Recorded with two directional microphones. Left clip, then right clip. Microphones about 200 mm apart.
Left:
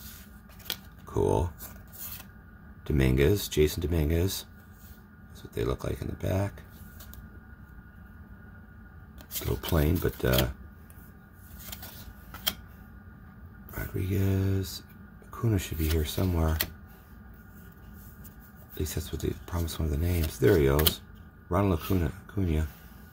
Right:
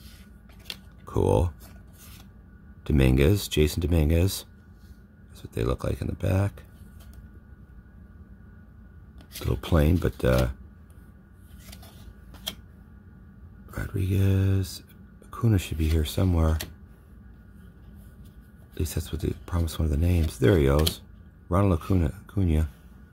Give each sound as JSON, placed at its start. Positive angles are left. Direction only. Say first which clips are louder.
{"t": 1.0, "sound": "speech", "louder": "right 3 dB", "side_deg": -45}
{"t": 2.8, "sound": "speech", "louder": "right 3 dB", "side_deg": -45}
{"t": 9.4, "sound": "speech", "louder": "right 3 dB", "side_deg": -45}
{"t": 13.7, "sound": "speech", "louder": "right 2 dB", "side_deg": -40}
{"t": 18.8, "sound": "speech", "louder": "right 1 dB", "side_deg": -40}